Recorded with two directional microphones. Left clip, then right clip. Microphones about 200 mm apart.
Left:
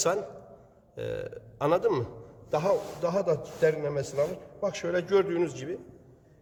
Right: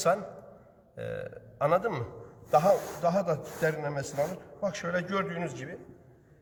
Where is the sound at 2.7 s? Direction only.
15° right (ahead or behind).